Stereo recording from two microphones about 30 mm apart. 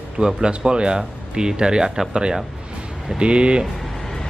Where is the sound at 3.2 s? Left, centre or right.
Right.